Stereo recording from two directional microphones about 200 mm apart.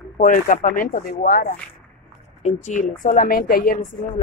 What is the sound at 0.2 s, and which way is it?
A woman's voice, 40° left (ahead or behind).